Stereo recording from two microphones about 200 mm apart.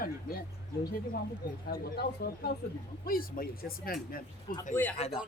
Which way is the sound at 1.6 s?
50° left (ahead or behind).